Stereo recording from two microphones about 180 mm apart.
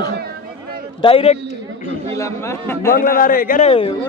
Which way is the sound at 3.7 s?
30° left (ahead or behind).